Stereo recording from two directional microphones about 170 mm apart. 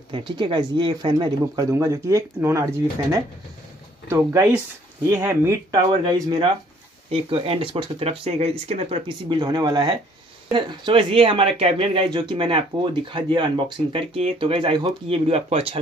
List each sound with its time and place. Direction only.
0.4 s speech: 30° right (ahead or behind)